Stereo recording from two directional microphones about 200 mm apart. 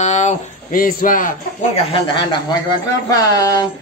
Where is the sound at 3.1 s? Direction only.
20° left (ahead or behind).